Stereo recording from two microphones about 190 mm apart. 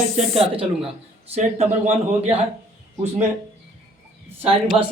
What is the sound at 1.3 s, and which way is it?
A man's voice, 40° right (ahead or behind).